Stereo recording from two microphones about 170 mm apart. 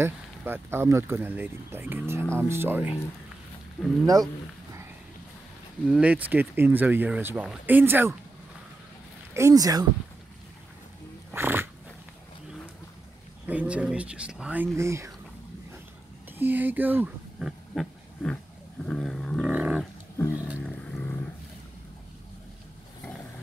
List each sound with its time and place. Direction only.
0.0 s speech: 15° right (ahead or behind)
4.0 s speech: 20° right (ahead or behind)
5.9 s speech: 5° right (ahead or behind)
9.3 s speech: 20° right (ahead or behind)
11.3 s dog: 10° right (ahead or behind)
13.5 s speech: 10° right (ahead or behind)
16.3 s speech: 10° right (ahead or behind)
18.9 s roaring cats: 5° left (ahead or behind)
20.3 s speech: 5° right (ahead or behind)
20.9 s a sound: 10° left (ahead or behind)